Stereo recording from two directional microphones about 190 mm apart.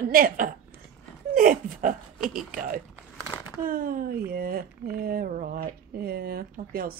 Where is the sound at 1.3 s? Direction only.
45° right (ahead or behind).